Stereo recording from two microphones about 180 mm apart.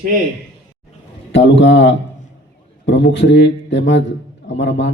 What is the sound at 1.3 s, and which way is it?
A man's voice, 90° left.